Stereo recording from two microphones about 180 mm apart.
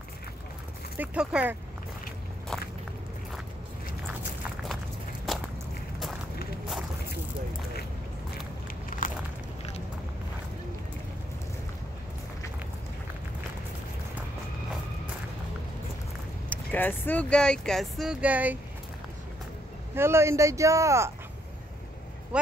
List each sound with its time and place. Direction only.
0.9 s speech: 5° right (ahead or behind)
2.5 s walk: 5° left (ahead or behind)
8.9 s a sound: 50° left (ahead or behind)
16.4 s speech: 10° left (ahead or behind); by 18.6 s 10° right (ahead or behind)
20.0 s speech: 15° right (ahead or behind)
22.3 s speech: 5° right (ahead or behind)